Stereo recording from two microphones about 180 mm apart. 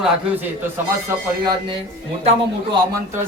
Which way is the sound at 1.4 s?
25° right (ahead or behind).